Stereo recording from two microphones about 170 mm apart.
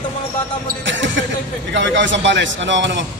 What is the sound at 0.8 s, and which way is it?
A man's voice, 90° right.